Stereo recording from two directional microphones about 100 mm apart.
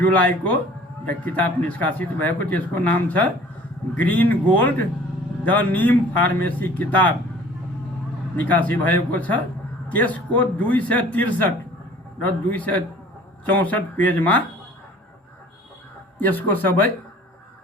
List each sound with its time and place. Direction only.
0.2 s speech: 15° left (ahead or behind)
8.4 s speech: 15° left (ahead or behind)
16.1 s speech: 20° left (ahead or behind)